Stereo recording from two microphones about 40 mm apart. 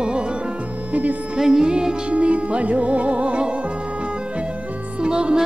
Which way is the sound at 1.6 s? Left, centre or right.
Right.